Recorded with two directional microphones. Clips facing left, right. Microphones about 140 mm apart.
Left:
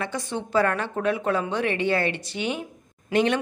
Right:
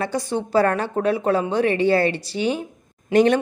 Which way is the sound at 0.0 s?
35° right (ahead or behind).